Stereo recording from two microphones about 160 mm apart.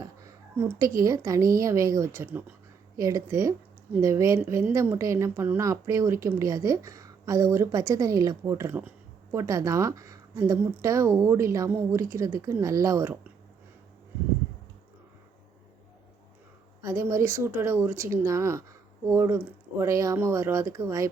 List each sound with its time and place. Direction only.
0.0 s a woman's voice: 20° right (ahead or behind)
16.8 s speech: 20° right (ahead or behind)